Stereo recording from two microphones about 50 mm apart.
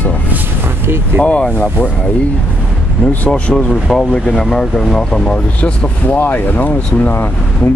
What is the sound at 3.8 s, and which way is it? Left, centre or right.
Speech, centre.